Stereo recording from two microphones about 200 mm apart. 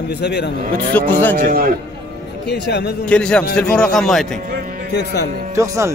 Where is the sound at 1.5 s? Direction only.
45° right (ahead or behind).